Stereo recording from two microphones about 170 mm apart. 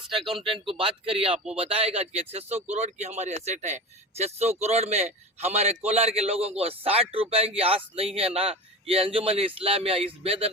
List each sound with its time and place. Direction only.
0.5 s a man's voice: 30° right (ahead or behind)